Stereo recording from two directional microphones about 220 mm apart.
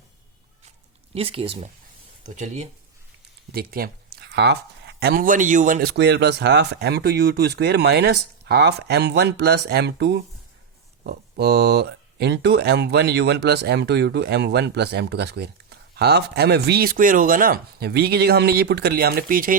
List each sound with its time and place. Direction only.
1.1 s speech: 25° right (ahead or behind)